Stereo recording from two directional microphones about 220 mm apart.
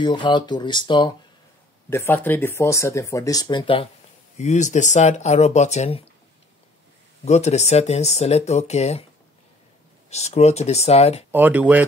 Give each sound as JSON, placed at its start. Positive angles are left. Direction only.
{"t": 0.0, "sound": "speech", "side_deg": 20}
{"t": 1.9, "sound": "speech", "side_deg": 10}
{"t": 7.2, "sound": "speech", "side_deg": 30}
{"t": 10.0, "sound": "speech", "side_deg": 30}
{"t": 11.3, "sound": "speech", "side_deg": -5}